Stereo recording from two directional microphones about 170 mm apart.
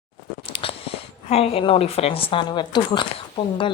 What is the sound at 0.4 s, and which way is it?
Speech, 35° left (ahead or behind).